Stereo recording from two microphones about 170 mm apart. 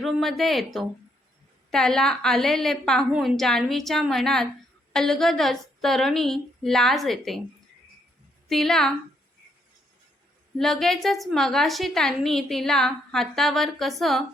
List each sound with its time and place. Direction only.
0.0 s a woman's voice: centre (ahead or behind)
8.4 s a woman's voice: centre (ahead or behind)
10.6 s a woman's voice: centre (ahead or behind)